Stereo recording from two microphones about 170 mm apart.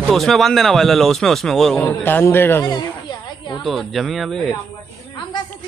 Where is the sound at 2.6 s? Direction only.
25° left (ahead or behind).